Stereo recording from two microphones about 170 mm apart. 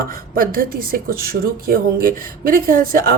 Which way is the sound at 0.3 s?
60° right (ahead or behind).